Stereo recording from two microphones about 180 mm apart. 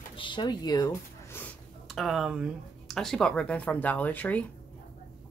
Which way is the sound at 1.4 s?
Centre (ahead or behind).